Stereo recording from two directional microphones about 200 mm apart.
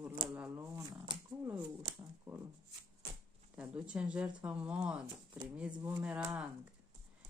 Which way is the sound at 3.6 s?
5° right (ahead or behind).